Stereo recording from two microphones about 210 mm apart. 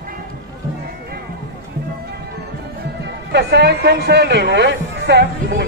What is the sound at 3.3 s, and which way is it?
Speech, 50° right (ahead or behind).